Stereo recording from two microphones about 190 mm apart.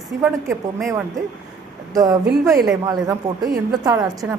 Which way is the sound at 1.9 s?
20° right (ahead or behind).